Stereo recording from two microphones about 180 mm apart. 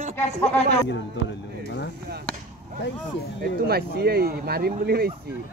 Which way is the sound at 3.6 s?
60° right (ahead or behind).